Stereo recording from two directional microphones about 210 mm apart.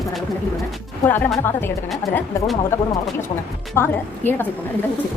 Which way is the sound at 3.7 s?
10° left (ahead or behind).